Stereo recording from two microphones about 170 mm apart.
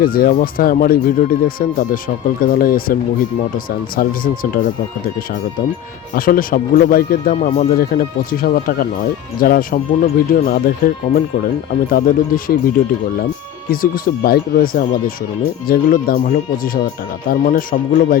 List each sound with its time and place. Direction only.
0.0 s speech: 60° left (ahead or behind)
6.1 s speech: 55° left (ahead or behind)